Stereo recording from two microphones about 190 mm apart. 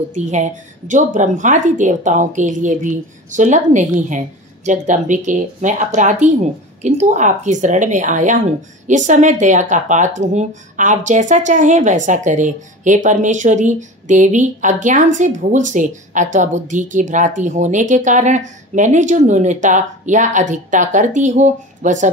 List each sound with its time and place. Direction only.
0.1 s speech: 40° right (ahead or behind)